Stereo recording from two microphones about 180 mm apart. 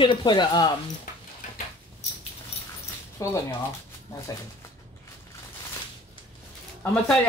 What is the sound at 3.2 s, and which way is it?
Speech, 20° left (ahead or behind).